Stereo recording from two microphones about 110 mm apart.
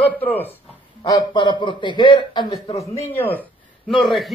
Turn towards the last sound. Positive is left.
turn(degrees=0)  # may be behind; listen again after turning